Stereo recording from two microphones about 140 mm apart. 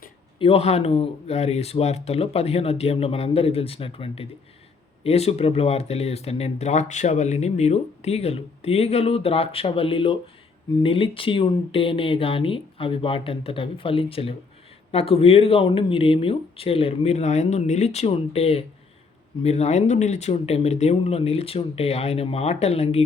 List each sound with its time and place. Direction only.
0.3 s speech: 45° left (ahead or behind)